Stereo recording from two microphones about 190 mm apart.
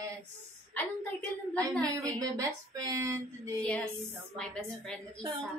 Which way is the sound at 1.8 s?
20° right (ahead or behind).